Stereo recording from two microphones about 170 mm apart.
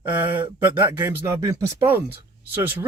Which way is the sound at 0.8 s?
20° right (ahead or behind).